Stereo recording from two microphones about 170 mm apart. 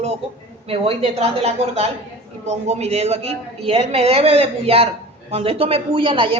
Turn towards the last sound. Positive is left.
turn(degrees=-30)  # may be behind; listen again after turning